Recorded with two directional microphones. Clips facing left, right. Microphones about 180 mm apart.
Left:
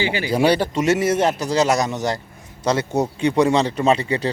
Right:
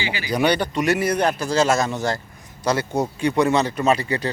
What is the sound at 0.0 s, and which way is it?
Speech, 55° left (ahead or behind).